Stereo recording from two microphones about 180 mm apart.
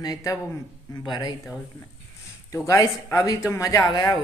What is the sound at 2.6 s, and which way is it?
A woman's voice, 20° left (ahead or behind).